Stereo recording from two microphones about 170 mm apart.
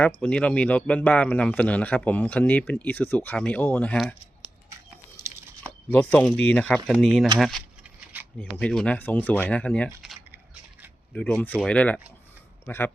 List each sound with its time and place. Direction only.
0.2 s a man's voice: 5° left (ahead or behind)
5.1 s a sound: 15° right (ahead or behind)
5.9 s a man's voice: 10° left (ahead or behind)
11.1 s a man's voice: 5° left (ahead or behind)